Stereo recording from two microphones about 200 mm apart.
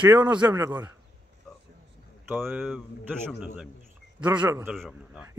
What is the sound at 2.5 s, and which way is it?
Speech, 5° right (ahead or behind).